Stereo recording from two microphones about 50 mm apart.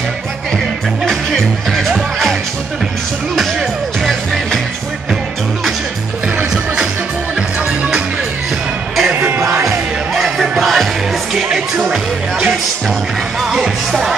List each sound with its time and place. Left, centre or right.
1.3 s music: centre
9.1 s music: right
10.2 s music: centre
11.5 s music: centre
13.4 s speech: centre